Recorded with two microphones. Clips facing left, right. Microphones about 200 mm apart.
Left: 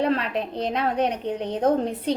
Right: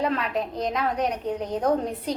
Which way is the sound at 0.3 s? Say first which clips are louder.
Left 1 dB; 30° left (ahead or behind).